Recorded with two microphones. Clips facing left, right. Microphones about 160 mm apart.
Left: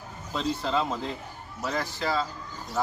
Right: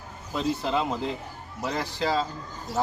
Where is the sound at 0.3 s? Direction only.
10° right (ahead or behind).